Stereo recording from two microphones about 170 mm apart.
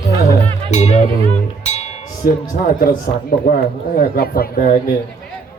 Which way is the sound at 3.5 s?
60° left (ahead or behind).